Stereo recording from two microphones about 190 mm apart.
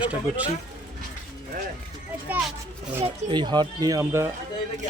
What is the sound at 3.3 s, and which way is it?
Speech, 25° right (ahead or behind).